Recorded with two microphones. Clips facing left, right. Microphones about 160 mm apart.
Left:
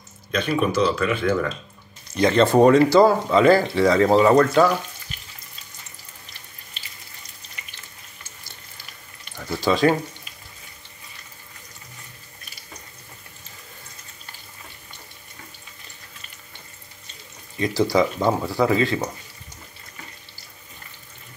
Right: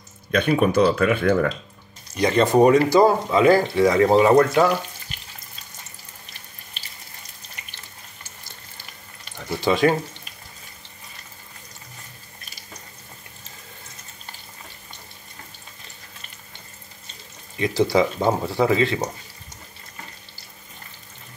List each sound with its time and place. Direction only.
0.3 s speech: 55° right (ahead or behind)
2.1 s speech: 15° right (ahead or behind)
9.5 s speech: 20° right (ahead or behind)
17.6 s speech: 25° right (ahead or behind)